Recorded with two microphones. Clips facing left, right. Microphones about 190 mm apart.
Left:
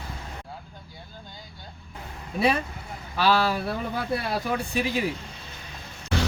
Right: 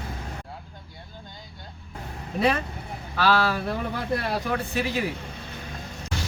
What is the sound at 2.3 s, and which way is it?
Speech, 10° left (ahead or behind).